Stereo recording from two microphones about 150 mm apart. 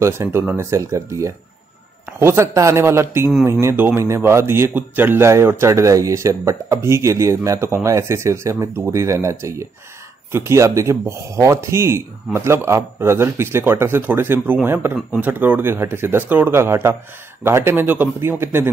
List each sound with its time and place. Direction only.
0.0 s speech: 15° right (ahead or behind)